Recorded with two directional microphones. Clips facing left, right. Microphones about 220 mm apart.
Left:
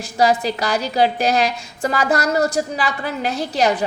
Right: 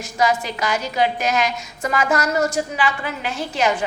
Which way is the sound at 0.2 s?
35° left (ahead or behind).